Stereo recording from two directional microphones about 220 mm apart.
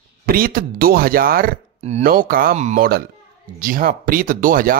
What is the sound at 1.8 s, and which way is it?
Speech, 30° right (ahead or behind).